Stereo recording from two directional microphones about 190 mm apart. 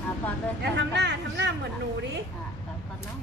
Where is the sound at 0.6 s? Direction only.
65° right (ahead or behind).